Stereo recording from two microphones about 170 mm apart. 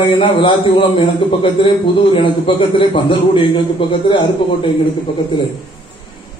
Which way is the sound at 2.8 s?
30° left (ahead or behind).